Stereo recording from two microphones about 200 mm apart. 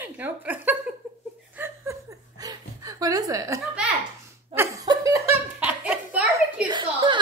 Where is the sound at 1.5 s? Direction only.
10° right (ahead or behind).